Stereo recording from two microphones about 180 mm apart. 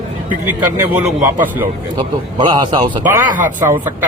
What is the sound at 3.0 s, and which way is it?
Speech, 10° right (ahead or behind).